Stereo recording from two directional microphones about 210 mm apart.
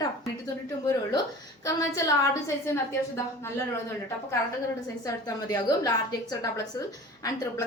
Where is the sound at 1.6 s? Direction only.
15° left (ahead or behind).